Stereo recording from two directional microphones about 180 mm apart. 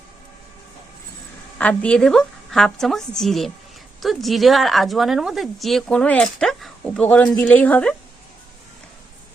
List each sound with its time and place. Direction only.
1.5 s speech: 5° left (ahead or behind)